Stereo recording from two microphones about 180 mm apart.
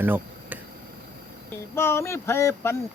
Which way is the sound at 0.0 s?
10° right (ahead or behind).